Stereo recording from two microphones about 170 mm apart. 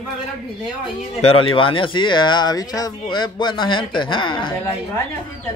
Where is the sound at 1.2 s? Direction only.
30° left (ahead or behind).